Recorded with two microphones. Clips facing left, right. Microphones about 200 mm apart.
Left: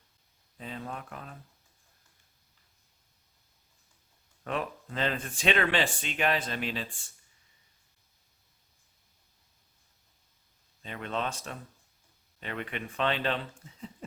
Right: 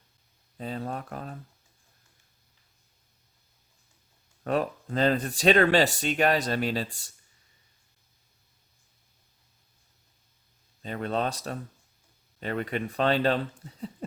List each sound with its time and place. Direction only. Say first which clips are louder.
0.5 s speech: right 6 dB; 40° right (ahead or behind)
4.4 s speech: right 6 dB; 40° right (ahead or behind)
10.8 s speech: right 5 dB; 40° right (ahead or behind)